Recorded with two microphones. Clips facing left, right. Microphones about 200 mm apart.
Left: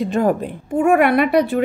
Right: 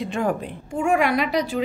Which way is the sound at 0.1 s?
40° left (ahead or behind).